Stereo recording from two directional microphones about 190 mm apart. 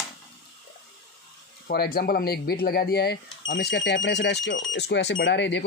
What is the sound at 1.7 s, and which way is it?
Speech, 55° left (ahead or behind).